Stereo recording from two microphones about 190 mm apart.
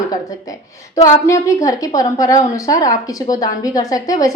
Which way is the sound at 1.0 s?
15° left (ahead or behind).